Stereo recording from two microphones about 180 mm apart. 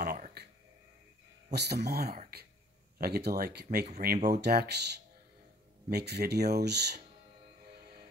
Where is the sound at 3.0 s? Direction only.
60° right (ahead or behind).